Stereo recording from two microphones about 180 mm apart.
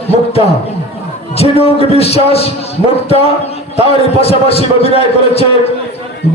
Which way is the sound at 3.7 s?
35° left (ahead or behind).